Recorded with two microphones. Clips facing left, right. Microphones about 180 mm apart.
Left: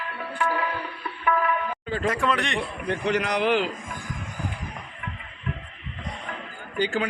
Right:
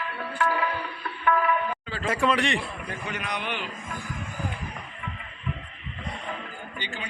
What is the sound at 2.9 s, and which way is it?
Speech, 75° left (ahead or behind).